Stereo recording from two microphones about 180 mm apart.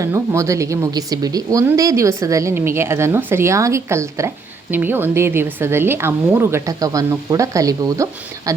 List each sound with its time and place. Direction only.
0.0 s speech: 15° right (ahead or behind)